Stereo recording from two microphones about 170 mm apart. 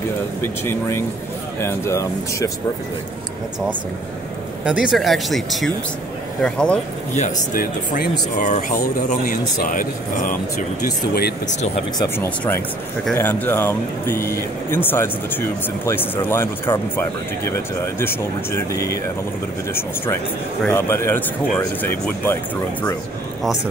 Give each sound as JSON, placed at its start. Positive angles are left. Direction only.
{"t": 0.4, "sound": "speech", "side_deg": 15}
{"t": 4.6, "sound": "speech", "side_deg": -5}
{"t": 7.2, "sound": "speech", "side_deg": 55}
{"t": 12.0, "sound": "speech", "side_deg": 15}
{"t": 20.6, "sound": "speech", "side_deg": 15}